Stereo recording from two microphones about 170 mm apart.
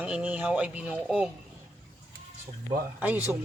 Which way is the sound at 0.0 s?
10° right (ahead or behind).